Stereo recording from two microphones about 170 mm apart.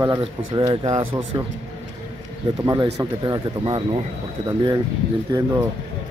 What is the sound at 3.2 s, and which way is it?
Speech, 25° right (ahead or behind).